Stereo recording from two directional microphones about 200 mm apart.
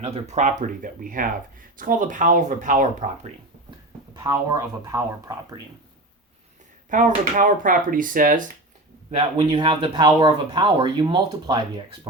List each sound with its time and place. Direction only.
0.0 s speech: 30° right (ahead or behind)
4.1 s speech: 15° right (ahead or behind)
6.9 s speech: 40° right (ahead or behind)
9.0 s speech: 25° right (ahead or behind)